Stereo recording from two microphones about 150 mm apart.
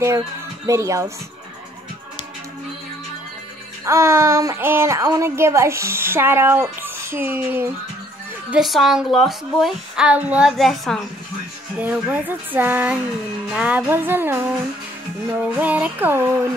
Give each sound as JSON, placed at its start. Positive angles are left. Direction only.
{"t": 0.7, "sound": "speech", "side_deg": -20}
{"t": 3.8, "sound": "a woman's voice", "side_deg": -20}
{"t": 8.5, "sound": "a woman's voice", "side_deg": 0}
{"t": 11.8, "sound": "a woman's voice", "side_deg": -10}
{"t": 15.5, "sound": "a woman's voice", "side_deg": -10}